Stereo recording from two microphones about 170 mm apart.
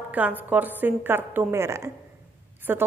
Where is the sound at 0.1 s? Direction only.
10° right (ahead or behind).